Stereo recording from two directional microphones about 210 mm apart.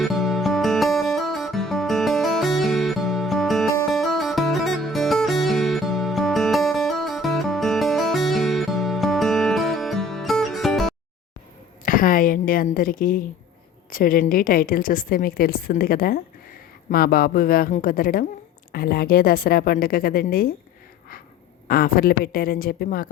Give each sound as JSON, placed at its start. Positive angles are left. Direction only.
{"t": 0.0, "sound": "music", "side_deg": 0}
{"t": 11.9, "sound": "a sound", "side_deg": 40}
{"t": 13.9, "sound": "a woman's voice", "side_deg": 40}
{"t": 21.7, "sound": "a woman's voice", "side_deg": 45}